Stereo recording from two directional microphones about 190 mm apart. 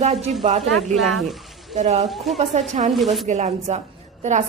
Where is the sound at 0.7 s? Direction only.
Centre (ahead or behind).